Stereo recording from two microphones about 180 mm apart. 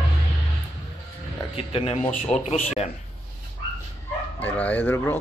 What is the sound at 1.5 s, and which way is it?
Speech, 30° left (ahead or behind).